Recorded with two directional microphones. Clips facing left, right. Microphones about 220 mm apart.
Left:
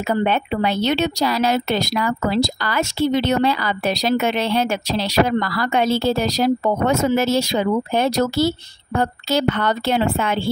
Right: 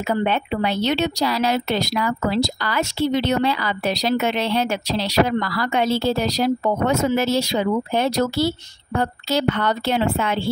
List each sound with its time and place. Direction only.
0.0 s speech: 50° left (ahead or behind)